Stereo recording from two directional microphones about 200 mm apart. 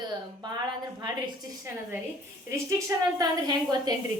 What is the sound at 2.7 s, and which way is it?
A woman's voice, 15° right (ahead or behind).